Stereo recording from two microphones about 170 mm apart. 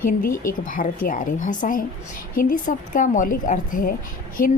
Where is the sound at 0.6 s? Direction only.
50° left (ahead or behind).